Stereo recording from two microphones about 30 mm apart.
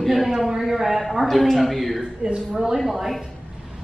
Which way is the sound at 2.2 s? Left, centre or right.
Right.